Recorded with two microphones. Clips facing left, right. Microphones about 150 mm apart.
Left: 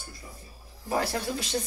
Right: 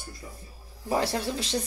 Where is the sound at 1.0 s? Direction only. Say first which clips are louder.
Even; 35° right (ahead or behind).